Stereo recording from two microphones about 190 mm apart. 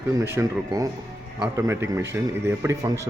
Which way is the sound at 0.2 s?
15° right (ahead or behind).